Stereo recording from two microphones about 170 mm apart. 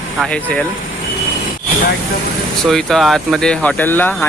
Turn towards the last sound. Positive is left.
turn(degrees=10)  # may be behind; listen again after turning